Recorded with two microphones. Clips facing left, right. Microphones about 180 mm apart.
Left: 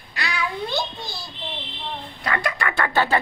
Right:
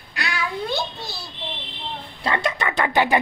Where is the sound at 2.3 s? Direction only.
25° right (ahead or behind).